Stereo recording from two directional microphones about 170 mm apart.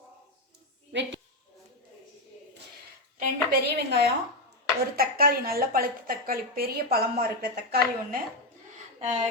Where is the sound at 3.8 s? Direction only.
75° right (ahead or behind).